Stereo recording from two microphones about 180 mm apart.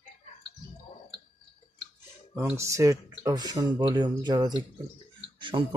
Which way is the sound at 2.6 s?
15° right (ahead or behind).